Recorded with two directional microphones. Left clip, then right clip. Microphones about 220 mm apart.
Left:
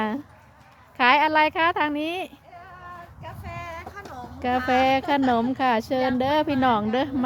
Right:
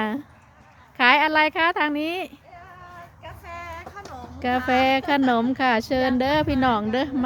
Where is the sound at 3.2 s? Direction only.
5° right (ahead or behind).